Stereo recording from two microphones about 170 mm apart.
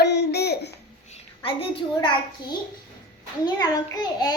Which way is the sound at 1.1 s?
35° left (ahead or behind).